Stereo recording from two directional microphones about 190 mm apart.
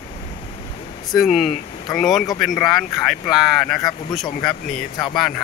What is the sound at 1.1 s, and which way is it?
Speech, centre (ahead or behind).